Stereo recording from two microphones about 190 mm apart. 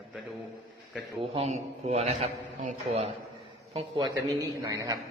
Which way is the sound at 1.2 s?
35° right (ahead or behind).